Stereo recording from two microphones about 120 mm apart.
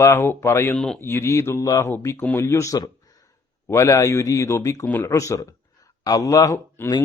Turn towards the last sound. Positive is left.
turn(degrees=25)  # may be behind; listen again after turning